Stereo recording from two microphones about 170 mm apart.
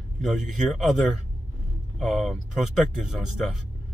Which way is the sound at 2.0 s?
Centre (ahead or behind).